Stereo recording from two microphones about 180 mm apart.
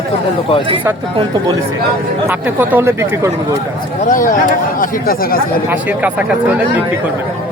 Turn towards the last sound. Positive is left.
turn(degrees=-10)  # may be behind; listen again after turning